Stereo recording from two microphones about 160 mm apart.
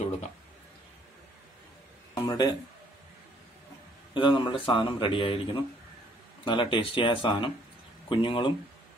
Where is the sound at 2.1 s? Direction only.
25° left (ahead or behind).